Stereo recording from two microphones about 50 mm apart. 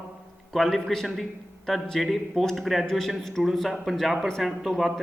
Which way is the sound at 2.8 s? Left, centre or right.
Centre.